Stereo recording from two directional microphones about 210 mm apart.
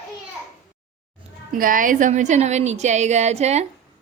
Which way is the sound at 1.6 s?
40° right (ahead or behind).